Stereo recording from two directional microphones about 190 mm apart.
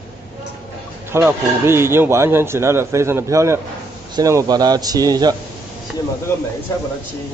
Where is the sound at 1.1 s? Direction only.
15° right (ahead or behind).